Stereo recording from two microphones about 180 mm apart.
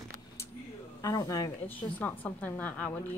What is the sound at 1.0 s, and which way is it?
Speech, 20° left (ahead or behind).